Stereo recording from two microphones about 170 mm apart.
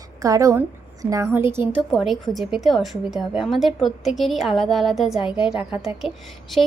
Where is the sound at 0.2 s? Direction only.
20° right (ahead or behind).